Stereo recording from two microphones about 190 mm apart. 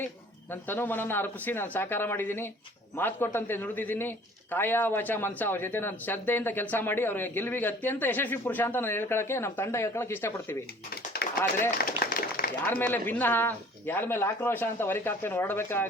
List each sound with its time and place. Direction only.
0.7 s speech: 10° left (ahead or behind)
11.2 s tap: 60° left (ahead or behind)
11.8 s a sound: 50° left (ahead or behind)
12.6 s speech: 10° left (ahead or behind)